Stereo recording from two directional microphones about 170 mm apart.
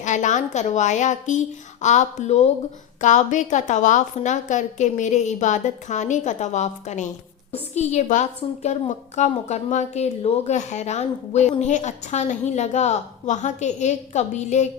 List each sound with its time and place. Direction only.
0.0 s a woman's voice: 45° left (ahead or behind)